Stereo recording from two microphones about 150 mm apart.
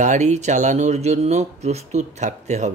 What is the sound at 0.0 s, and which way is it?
Speech, 50° right (ahead or behind).